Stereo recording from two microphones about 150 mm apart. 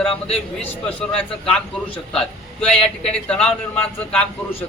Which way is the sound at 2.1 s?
5° left (ahead or behind).